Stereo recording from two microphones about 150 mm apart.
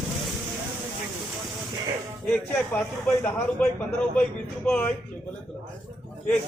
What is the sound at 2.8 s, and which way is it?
A man's voice, 5° left (ahead or behind).